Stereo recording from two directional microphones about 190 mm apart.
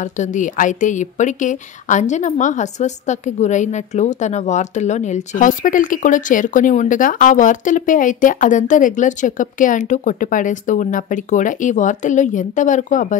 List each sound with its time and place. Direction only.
0.0 s speech: 40° left (ahead or behind)